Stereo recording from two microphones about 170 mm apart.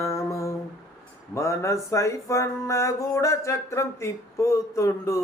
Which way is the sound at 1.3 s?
15° left (ahead or behind).